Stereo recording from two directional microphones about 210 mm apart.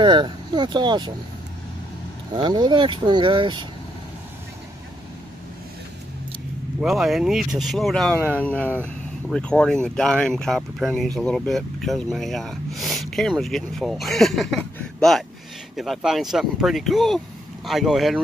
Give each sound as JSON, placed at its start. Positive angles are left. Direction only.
{"t": 0.0, "sound": "speech", "side_deg": -20}
{"t": 2.3, "sound": "speech", "side_deg": -20}
{"t": 6.8, "sound": "speech", "side_deg": 0}